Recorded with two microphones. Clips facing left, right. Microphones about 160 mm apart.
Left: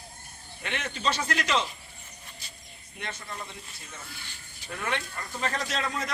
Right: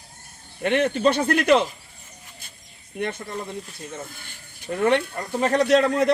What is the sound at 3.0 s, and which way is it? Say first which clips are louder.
A man's voice: right 10 dB; 55° right (ahead or behind).